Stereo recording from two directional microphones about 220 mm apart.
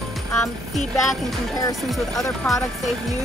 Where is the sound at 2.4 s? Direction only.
5° left (ahead or behind).